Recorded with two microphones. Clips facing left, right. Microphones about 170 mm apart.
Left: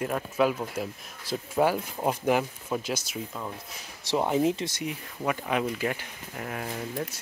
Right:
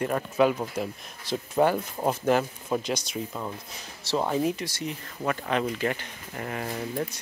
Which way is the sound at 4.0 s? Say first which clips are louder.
Left 1 dB; 15° left (ahead or behind).